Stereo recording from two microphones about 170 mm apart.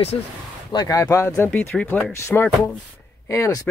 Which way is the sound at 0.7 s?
20° left (ahead or behind).